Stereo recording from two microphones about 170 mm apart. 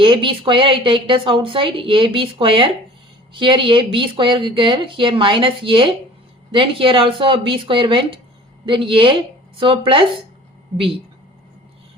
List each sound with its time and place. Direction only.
0.0 s a woman's voice: 30° right (ahead or behind)